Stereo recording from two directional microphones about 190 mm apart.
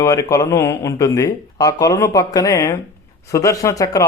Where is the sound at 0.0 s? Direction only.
15° left (ahead or behind).